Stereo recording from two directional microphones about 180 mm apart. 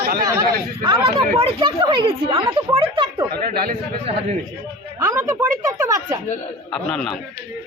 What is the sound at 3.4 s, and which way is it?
Speech, 45° right (ahead or behind).